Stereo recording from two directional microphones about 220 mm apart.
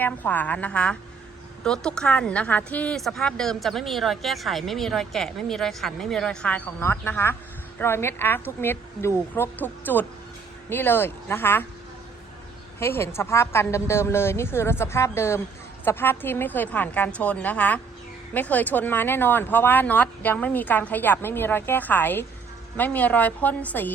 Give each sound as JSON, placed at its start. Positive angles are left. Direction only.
{"t": 0.0, "sound": "a woman's voice", "side_deg": 10}
{"t": 12.8, "sound": "speech", "side_deg": 10}